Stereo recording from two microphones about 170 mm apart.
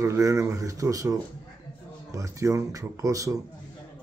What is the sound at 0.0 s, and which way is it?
Speech, 20° right (ahead or behind).